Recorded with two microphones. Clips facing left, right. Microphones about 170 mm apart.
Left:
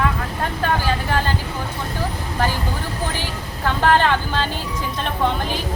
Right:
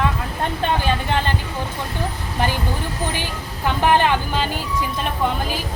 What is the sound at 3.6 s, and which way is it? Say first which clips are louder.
Speech: even; 15° right (ahead or behind).